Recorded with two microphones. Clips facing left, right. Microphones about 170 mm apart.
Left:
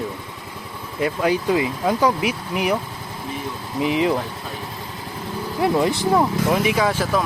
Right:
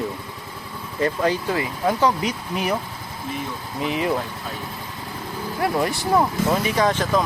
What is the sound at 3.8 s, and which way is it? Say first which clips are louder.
Speech: left 4 dB; 20° left (ahead or behind).